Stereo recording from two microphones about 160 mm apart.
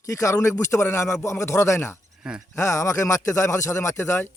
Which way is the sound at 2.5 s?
15° left (ahead or behind).